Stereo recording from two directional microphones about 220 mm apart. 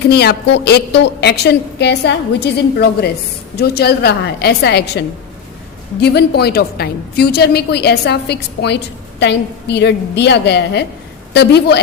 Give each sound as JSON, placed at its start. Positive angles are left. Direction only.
{"t": 0.1, "sound": "a woman's voice", "side_deg": 45}